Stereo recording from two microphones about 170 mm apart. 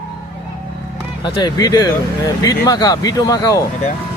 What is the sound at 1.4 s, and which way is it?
Speech, 25° left (ahead or behind).